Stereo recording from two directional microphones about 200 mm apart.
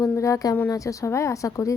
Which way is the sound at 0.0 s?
15° left (ahead or behind).